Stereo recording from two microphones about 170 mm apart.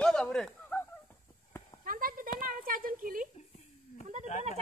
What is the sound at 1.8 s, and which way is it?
Clip-clop, 55° right (ahead or behind).